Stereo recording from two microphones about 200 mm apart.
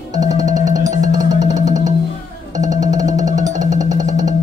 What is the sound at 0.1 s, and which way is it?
Music, 20° right (ahead or behind).